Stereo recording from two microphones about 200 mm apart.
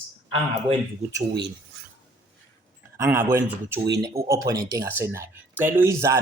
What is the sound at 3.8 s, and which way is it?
Speech, 55° right (ahead or behind).